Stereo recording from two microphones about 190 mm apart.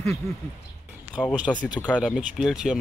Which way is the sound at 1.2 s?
5° left (ahead or behind).